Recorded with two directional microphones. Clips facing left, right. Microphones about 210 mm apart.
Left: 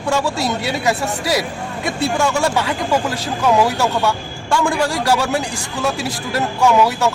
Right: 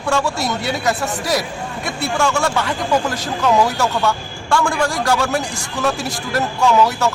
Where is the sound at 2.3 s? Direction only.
15° left (ahead or behind).